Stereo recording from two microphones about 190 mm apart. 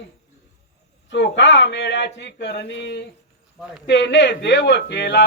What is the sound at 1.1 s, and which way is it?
Speech, 70° left (ahead or behind).